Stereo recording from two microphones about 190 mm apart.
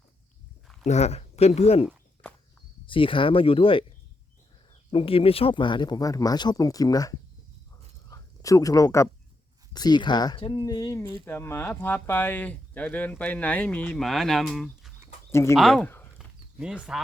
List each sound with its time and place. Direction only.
0.9 s speech: 35° left (ahead or behind); by 14.9 s centre (ahead or behind)
15.3 s speech: 15° left (ahead or behind)
15.5 s speech: centre (ahead or behind)
16.1 s a sound: 5° right (ahead or behind)